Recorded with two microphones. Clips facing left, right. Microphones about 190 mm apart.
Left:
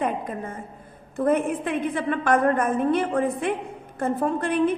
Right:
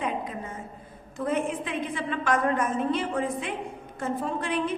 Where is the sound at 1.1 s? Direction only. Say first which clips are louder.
Left 6 dB; 55° left (ahead or behind).